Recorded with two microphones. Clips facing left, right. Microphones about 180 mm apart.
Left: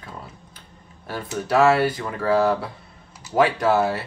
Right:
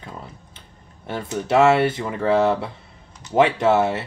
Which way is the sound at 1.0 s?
25° right (ahead or behind).